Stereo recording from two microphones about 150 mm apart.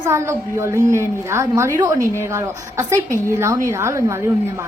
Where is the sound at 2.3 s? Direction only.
20° right (ahead or behind).